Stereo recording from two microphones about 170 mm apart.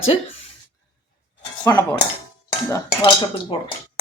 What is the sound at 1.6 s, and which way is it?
Speech, 20° left (ahead or behind).